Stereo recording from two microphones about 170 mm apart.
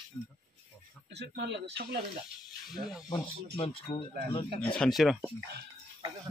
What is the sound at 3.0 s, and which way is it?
Speech, 25° left (ahead or behind).